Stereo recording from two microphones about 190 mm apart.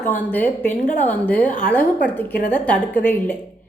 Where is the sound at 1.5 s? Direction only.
45° left (ahead or behind).